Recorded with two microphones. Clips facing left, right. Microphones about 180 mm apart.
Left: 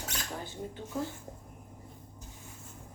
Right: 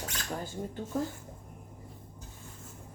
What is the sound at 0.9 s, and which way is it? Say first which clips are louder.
Speech: right 3 dB; 45° right (ahead or behind).